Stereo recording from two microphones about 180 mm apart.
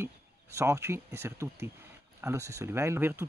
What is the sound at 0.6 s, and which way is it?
Speech, 15° right (ahead or behind).